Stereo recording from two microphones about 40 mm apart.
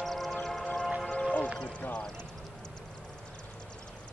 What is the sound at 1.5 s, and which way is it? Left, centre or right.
Music, left.